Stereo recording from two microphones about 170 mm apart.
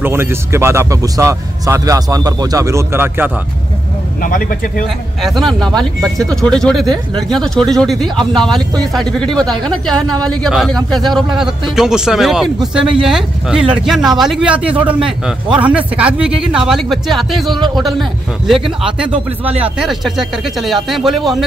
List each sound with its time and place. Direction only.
0.0 s speech: 15° right (ahead or behind)
4.2 s speech: 55° left (ahead or behind)
5.2 s speech: centre (ahead or behind)
19.6 s speech: centre (ahead or behind)